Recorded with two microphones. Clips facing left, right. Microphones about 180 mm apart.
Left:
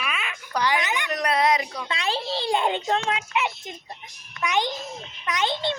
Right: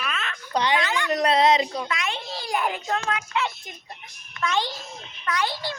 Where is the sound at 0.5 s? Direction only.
25° right (ahead or behind).